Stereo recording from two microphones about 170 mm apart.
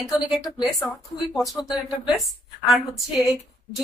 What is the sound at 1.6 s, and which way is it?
Speech, 25° left (ahead or behind).